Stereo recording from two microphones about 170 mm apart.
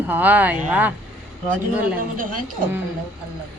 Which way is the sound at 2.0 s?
55° right (ahead or behind).